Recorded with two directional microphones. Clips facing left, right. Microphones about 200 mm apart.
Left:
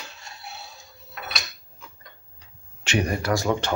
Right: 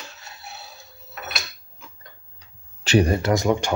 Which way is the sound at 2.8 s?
30° right (ahead or behind).